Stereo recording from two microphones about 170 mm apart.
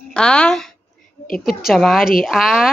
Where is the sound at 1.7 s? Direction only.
Centre (ahead or behind).